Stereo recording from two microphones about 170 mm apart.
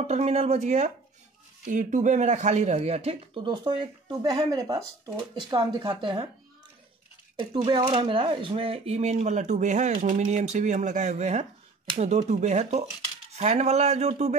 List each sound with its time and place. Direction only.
0.0 s speech: 40° right (ahead or behind)
7.3 s speech: 30° right (ahead or behind)